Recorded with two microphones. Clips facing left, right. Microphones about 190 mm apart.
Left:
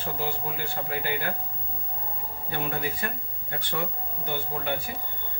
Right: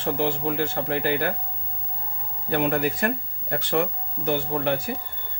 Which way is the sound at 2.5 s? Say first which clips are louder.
Right 9 dB; 90° right.